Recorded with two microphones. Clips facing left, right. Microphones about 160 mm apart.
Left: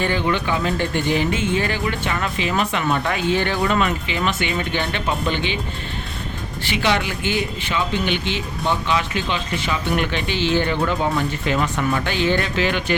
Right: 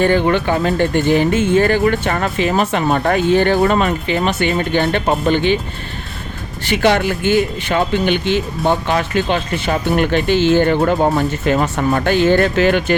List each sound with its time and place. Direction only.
0.0 s speech: 50° right (ahead or behind)
6.7 s speech: 50° right (ahead or behind)